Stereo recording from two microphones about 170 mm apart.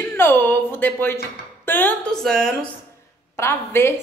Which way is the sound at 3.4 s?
15° left (ahead or behind).